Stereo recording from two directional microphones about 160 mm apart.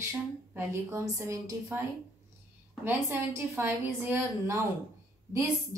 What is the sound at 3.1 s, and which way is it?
Speech, 15° right (ahead or behind).